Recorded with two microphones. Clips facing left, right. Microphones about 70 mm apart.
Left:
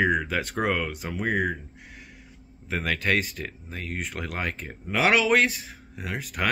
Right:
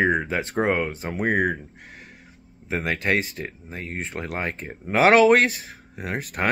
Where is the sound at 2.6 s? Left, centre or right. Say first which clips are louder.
Right 2 dB; right.